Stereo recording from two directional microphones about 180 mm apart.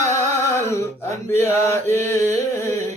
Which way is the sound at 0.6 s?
15° left (ahead or behind).